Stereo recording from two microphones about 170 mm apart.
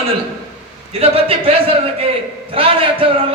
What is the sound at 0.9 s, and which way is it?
A man's voice, 35° right (ahead or behind).